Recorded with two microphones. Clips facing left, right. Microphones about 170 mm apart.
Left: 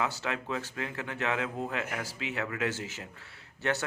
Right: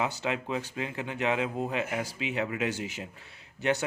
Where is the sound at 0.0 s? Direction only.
20° right (ahead or behind).